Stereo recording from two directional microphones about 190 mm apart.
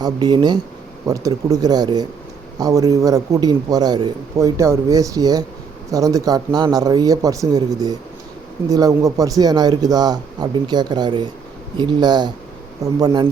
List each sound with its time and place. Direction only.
0.0 s a man's voice: 20° right (ahead or behind)